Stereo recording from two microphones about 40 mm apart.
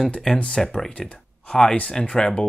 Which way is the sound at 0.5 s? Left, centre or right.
Centre.